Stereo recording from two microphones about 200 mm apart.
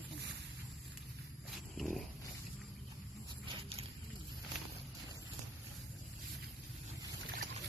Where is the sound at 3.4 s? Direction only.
30° right (ahead or behind).